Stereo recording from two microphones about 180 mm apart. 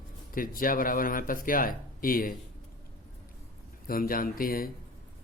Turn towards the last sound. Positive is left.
turn(degrees=55)  # may be behind; listen again after turning